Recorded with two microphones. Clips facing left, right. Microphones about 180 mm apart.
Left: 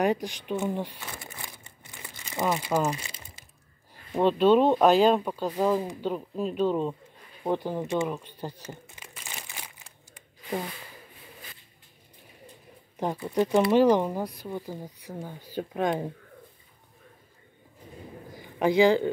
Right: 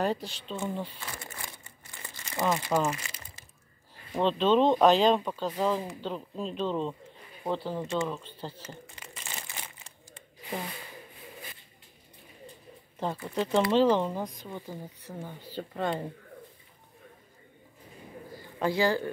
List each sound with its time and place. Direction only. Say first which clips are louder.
0.0 s speech: left 4 dB; 15° left (ahead or behind)
8.1 s crumpling: left 3 dB; 15° left (ahead or behind)
13.0 s speech: left 5 dB; 15° left (ahead or behind)
18.4 s a man's voice: left 6 dB; 15° left (ahead or behind)